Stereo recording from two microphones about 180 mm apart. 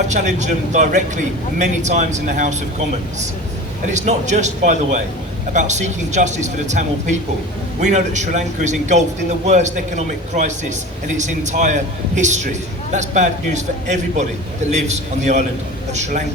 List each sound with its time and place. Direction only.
0.1 s a man's voice: 40° right (ahead or behind)
3.8 s a man's voice: 40° right (ahead or behind)